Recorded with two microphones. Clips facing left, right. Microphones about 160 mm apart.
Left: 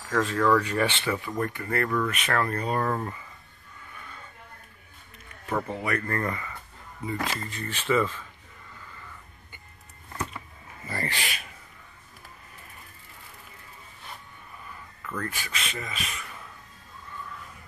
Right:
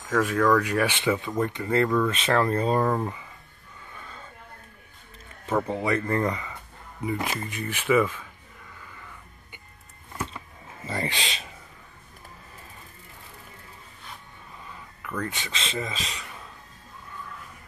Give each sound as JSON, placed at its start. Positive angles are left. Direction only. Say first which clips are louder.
{"t": 0.1, "sound": "speech", "louder": "right 2 dB", "side_deg": -5}
{"t": 2.8, "sound": "speech", "louder": "right 3 dB", "side_deg": -15}
{"t": 5.6, "sound": "speech", "louder": "right 5 dB", "side_deg": -20}
{"t": 10.9, "sound": "speech", "louder": "right 2 dB", "side_deg": -20}
{"t": 15.2, "sound": "speech", "louder": "right 1 dB", "side_deg": -20}